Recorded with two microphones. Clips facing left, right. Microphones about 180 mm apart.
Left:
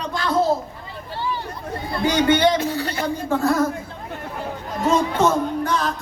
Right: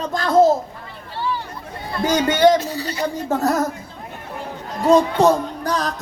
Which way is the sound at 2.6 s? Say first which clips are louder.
Left 1 dB; 55° left (ahead or behind).